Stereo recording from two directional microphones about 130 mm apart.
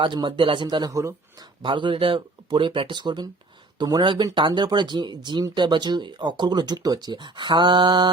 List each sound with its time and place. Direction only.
0.0 s speech: 40° right (ahead or behind)
1.6 s speech: 40° right (ahead or behind)